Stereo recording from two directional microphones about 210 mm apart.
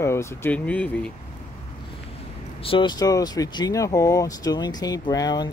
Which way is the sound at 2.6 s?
25° left (ahead or behind).